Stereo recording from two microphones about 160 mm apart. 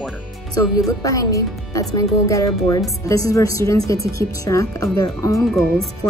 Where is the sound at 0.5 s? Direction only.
20° left (ahead or behind).